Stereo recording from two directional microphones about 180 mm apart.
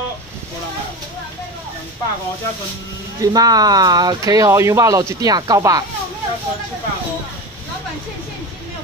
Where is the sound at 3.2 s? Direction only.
20° right (ahead or behind).